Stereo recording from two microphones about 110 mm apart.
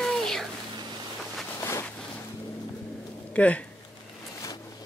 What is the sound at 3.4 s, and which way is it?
Speech, 10° left (ahead or behind).